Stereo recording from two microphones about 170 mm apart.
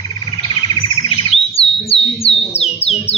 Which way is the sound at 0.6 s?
30° left (ahead or behind).